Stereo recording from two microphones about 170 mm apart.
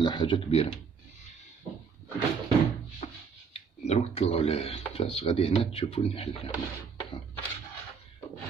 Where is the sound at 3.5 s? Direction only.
40° left (ahead or behind).